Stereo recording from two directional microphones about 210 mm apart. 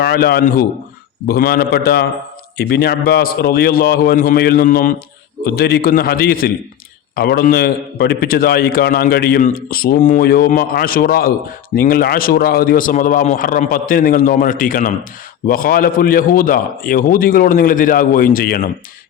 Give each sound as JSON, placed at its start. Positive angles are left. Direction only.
{"t": 0.0, "sound": "a man's voice", "side_deg": 50}